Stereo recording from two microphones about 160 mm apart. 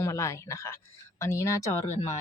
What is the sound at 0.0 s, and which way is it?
A woman's voice, 15° left (ahead or behind).